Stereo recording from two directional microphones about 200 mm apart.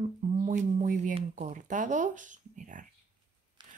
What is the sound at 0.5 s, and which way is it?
Speech, 40° right (ahead or behind).